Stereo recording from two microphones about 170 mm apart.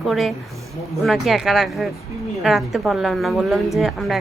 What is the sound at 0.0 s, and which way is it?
A woman's voice, centre (ahead or behind).